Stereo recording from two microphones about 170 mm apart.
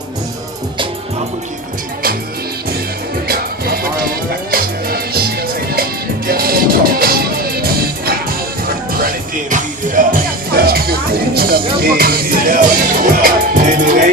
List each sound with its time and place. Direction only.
3.2 s music: 60° right (ahead or behind)